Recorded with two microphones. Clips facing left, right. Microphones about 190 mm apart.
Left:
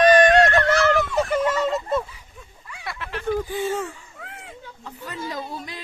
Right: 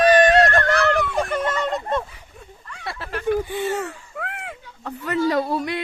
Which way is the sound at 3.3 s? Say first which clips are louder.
Right 2 dB; 65° right (ahead or behind).